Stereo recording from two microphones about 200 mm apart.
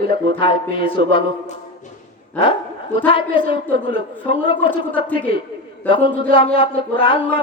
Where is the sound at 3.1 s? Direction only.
25° left (ahead or behind).